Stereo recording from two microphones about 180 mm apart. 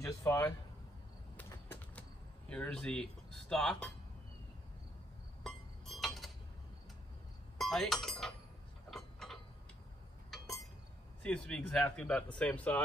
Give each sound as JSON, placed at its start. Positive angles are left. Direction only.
{"t": 0.0, "sound": "speech", "side_deg": 15}
{"t": 1.3, "sound": "a sound", "side_deg": 10}
{"t": 2.5, "sound": "speech", "side_deg": 5}
{"t": 5.4, "sound": "glass", "side_deg": 0}
{"t": 7.5, "sound": "speech", "side_deg": 0}
{"t": 8.9, "sound": "mechanisms", "side_deg": 0}
{"t": 11.2, "sound": "speech", "side_deg": 5}